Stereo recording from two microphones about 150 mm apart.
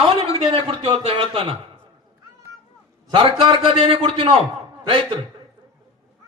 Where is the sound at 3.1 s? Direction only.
35° right (ahead or behind).